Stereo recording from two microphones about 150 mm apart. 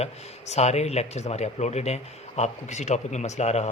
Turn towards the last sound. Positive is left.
turn(degrees=50)  # may be behind; listen again after turning